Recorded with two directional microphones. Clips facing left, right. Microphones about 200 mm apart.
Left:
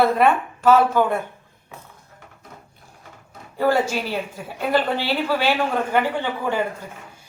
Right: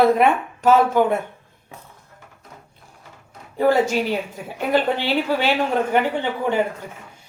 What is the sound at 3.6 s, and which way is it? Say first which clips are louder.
A woman's voice: right 3 dB; 20° right (ahead or behind).